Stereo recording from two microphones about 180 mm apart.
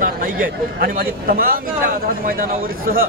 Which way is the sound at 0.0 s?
50° right (ahead or behind).